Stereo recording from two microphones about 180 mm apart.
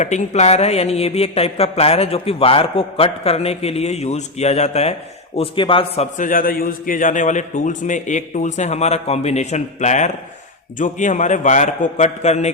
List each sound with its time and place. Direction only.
0.0 s speech: 40° left (ahead or behind)
6.1 s a man's voice: 50° left (ahead or behind)